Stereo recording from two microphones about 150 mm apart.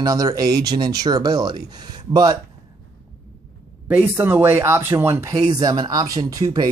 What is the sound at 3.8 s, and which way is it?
Speech, 15° right (ahead or behind).